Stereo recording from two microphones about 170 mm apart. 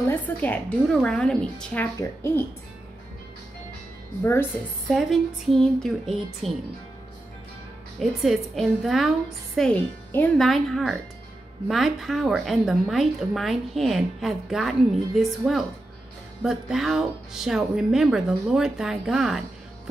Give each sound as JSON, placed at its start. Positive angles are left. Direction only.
{"t": 0.1, "sound": "a woman's voice", "side_deg": 10}
{"t": 4.2, "sound": "a woman's voice", "side_deg": 15}
{"t": 4.8, "sound": "a woman's voice", "side_deg": 0}
{"t": 8.0, "sound": "a woman's voice", "side_deg": 0}